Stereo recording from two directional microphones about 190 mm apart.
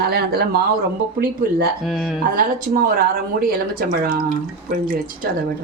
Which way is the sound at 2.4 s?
50° right (ahead or behind).